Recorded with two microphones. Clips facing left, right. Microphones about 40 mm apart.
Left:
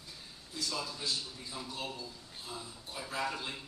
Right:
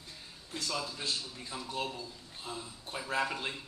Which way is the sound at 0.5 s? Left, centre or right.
Right.